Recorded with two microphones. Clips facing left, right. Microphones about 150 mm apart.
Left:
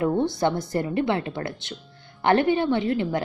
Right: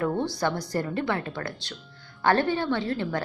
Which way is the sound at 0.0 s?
20° left (ahead or behind).